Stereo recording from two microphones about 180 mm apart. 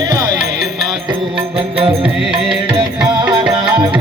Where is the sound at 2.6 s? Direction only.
25° right (ahead or behind).